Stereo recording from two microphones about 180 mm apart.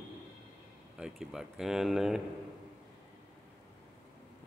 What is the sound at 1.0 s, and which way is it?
Speech, 5° right (ahead or behind).